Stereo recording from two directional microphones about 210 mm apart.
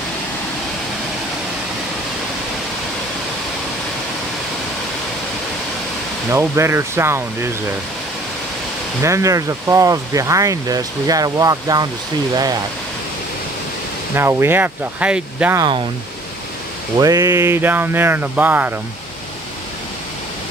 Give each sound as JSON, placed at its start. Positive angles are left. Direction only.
{"t": 6.3, "sound": "speech", "side_deg": -15}
{"t": 9.0, "sound": "speech", "side_deg": -15}
{"t": 14.1, "sound": "speech", "side_deg": -10}
{"t": 17.0, "sound": "speech", "side_deg": -15}